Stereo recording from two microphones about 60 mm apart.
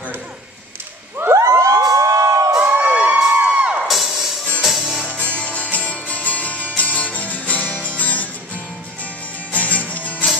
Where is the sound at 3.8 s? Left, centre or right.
Centre.